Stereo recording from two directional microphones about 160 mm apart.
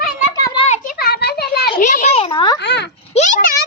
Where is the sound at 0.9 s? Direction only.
80° left.